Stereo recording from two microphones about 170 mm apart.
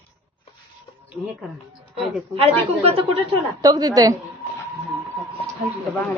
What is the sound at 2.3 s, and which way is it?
Speech, 35° right (ahead or behind).